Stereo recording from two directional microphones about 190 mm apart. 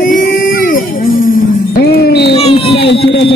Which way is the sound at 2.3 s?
30° left (ahead or behind).